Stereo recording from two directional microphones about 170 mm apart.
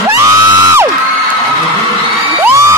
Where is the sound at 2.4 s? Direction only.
15° right (ahead or behind).